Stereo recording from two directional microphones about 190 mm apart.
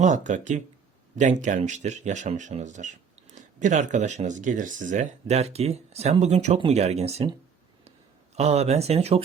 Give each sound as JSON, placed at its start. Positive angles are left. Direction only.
{"t": 0.0, "sound": "speech", "side_deg": -40}
{"t": 8.4, "sound": "speech", "side_deg": -35}